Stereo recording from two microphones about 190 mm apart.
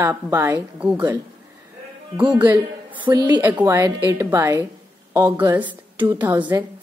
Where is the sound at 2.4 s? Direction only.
20° right (ahead or behind).